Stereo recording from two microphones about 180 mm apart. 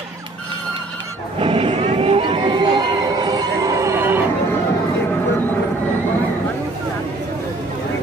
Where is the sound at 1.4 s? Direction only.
30° right (ahead or behind); by 4.2 s 10° right (ahead or behind).